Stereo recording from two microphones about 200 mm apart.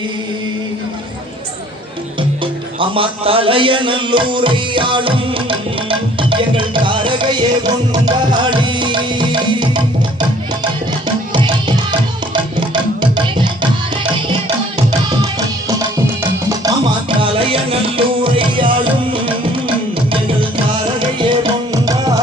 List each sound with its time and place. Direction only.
2.4 s music: 25° right (ahead or behind)
11.3 s music: 25° right (ahead or behind)
16.5 s music: 20° right (ahead or behind)
21.2 s music: 25° right (ahead or behind)